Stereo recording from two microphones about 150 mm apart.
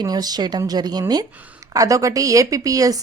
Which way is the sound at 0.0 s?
25° right (ahead or behind).